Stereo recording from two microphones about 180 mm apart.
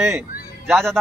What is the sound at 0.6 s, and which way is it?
Speech, centre (ahead or behind).